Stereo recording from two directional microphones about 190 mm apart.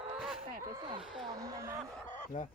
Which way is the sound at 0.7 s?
20° right (ahead or behind).